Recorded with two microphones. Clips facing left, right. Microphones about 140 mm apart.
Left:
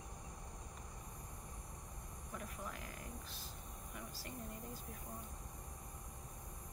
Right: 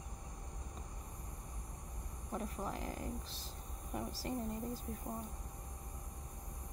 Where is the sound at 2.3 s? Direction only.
30° right (ahead or behind).